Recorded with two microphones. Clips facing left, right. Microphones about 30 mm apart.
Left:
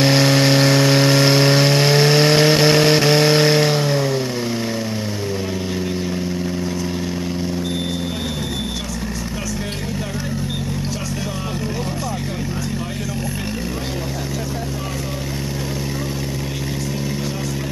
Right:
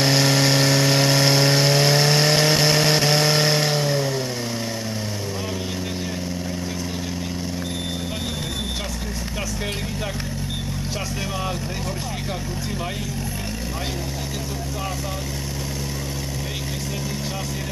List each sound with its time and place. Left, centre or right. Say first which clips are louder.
0.0 s vehicle: left 4 dB; centre